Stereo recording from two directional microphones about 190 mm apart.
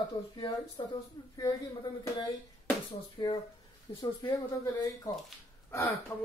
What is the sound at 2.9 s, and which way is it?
Speech, 20° left (ahead or behind).